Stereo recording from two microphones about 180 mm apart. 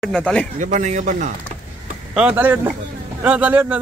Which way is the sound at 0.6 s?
45° right (ahead or behind).